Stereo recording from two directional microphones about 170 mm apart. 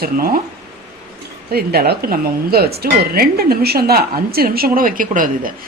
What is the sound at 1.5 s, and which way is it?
Speech, 65° right (ahead or behind).